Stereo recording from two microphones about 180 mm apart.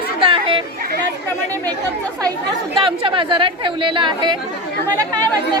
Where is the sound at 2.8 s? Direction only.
30° right (ahead or behind).